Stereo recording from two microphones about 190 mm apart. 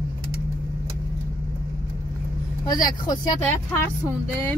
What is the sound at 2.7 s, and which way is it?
Speech, 20° left (ahead or behind).